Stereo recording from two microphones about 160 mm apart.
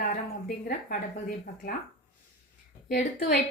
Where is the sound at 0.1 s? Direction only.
60° left (ahead or behind).